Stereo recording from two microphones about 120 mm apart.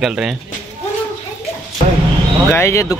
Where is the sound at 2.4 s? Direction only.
20° left (ahead or behind).